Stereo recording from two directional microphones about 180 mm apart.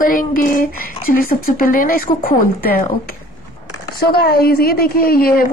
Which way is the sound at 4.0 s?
60° left (ahead or behind).